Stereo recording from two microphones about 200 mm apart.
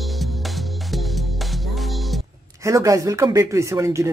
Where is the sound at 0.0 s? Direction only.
Centre (ahead or behind).